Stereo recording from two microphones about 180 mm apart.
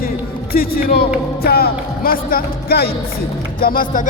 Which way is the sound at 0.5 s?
55° left (ahead or behind).